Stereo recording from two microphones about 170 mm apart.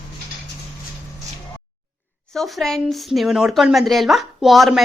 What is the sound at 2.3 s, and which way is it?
A woman's voice, centre (ahead or behind).